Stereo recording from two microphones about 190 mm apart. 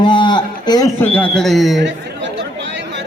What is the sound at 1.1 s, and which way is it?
Speech, 5° left (ahead or behind).